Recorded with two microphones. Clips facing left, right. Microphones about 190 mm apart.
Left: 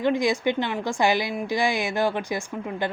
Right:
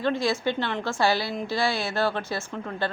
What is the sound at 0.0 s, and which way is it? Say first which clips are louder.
A woman's voice: left 3 dB; 15° left (ahead or behind).